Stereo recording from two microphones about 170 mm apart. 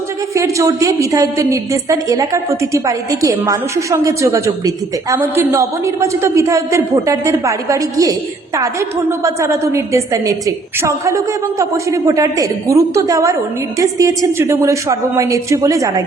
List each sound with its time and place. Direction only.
0.3 s a woman's voice: 20° right (ahead or behind)